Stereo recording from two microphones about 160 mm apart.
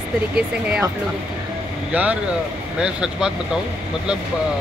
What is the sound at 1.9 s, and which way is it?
Speech, 10° right (ahead or behind).